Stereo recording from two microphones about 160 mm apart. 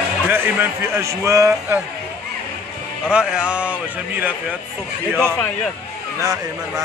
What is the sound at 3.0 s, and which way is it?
A man's voice, 5° right (ahead or behind).